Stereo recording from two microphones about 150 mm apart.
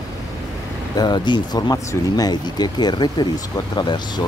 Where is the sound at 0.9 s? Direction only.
30° left (ahead or behind).